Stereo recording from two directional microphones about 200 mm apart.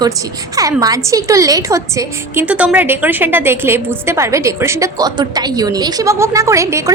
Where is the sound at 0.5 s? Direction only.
15° right (ahead or behind).